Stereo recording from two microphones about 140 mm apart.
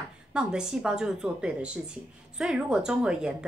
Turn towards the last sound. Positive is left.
turn(degrees=-5)  # may be behind; listen again after turning